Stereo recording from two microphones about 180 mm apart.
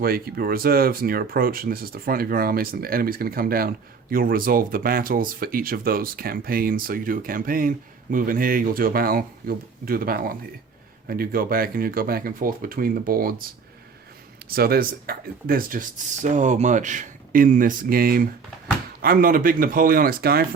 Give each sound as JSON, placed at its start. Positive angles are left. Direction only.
{"t": 0.0, "sound": "speech", "side_deg": -55}
{"t": 14.5, "sound": "speech", "side_deg": -60}